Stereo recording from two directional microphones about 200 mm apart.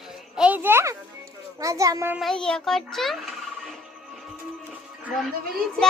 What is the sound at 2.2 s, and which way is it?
A child's voice, centre (ahead or behind).